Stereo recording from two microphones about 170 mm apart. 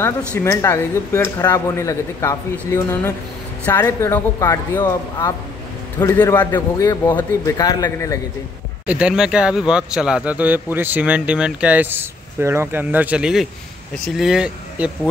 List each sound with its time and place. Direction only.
0.5 s a man's voice: 15° left (ahead or behind)
8.8 s speech: 5° right (ahead or behind)